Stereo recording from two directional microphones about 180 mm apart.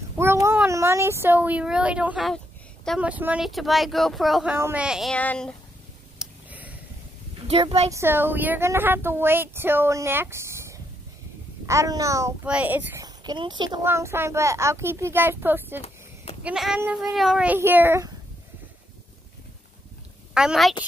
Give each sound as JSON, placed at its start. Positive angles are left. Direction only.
{"t": 0.2, "sound": "speech", "side_deg": -15}
{"t": 3.0, "sound": "speech", "side_deg": -10}
{"t": 5.1, "sound": "speech", "side_deg": 5}
{"t": 6.1, "sound": "a sound", "side_deg": -10}
{"t": 7.4, "sound": "speech", "side_deg": -35}
{"t": 7.9, "sound": "speech", "side_deg": -15}
{"t": 13.0, "sound": "speech", "side_deg": -25}
{"t": 13.8, "sound": "speech", "side_deg": -15}
{"t": 20.3, "sound": "speech", "side_deg": 0}